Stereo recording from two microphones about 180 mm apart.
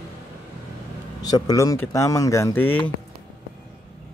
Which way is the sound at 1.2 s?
20° left (ahead or behind).